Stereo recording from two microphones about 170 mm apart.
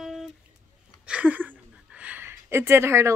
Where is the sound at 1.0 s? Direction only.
5° right (ahead or behind).